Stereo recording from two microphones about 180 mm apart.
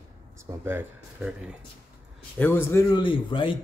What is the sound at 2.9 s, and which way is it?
Speech, 25° left (ahead or behind).